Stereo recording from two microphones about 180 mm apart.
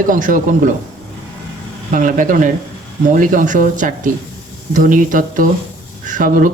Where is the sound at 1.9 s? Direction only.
45° right (ahead or behind).